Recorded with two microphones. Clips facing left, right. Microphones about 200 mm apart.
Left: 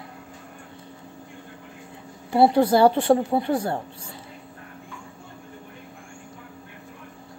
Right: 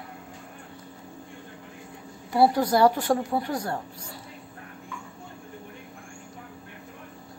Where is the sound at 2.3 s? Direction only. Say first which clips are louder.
Left 4 dB; 25° left (ahead or behind).